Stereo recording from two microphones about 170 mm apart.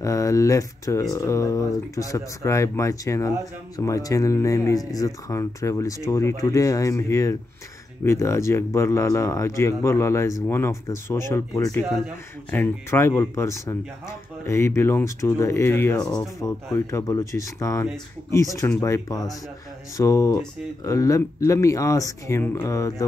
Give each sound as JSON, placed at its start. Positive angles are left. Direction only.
{"t": 0.0, "sound": "speech", "side_deg": 20}